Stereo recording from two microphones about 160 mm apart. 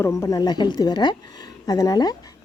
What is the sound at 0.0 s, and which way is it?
Speech, 20° left (ahead or behind).